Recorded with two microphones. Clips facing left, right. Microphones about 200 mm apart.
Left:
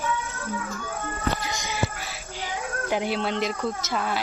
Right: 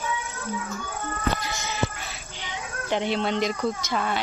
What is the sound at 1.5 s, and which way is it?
Music, 15° left (ahead or behind).